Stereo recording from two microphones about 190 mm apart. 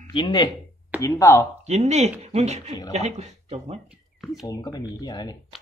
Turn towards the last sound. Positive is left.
turn(degrees=20)  # may be behind; listen again after turning